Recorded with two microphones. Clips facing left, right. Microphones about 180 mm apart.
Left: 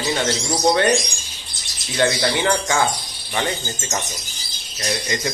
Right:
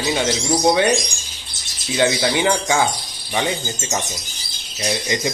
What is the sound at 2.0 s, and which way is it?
Speech, 15° right (ahead or behind).